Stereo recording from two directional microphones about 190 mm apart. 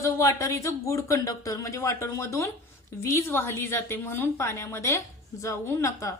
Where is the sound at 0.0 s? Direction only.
15° left (ahead or behind).